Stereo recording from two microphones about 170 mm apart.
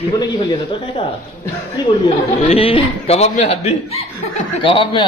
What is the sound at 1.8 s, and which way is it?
A man's voice, 25° left (ahead or behind).